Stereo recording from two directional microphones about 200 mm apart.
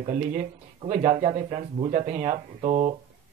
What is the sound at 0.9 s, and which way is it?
Speech, 35° right (ahead or behind).